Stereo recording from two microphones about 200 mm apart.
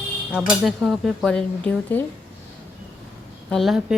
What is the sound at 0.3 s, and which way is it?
Speech, centre (ahead or behind).